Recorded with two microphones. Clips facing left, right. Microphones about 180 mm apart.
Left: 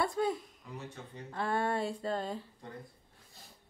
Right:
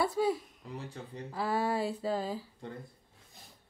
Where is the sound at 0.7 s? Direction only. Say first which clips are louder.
Right 3 dB; 30° right (ahead or behind).